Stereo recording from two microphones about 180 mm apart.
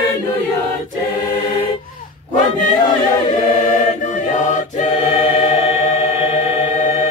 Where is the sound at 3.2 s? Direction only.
45° left (ahead or behind).